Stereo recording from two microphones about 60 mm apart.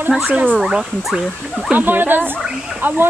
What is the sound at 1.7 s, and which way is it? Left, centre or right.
Speech, right.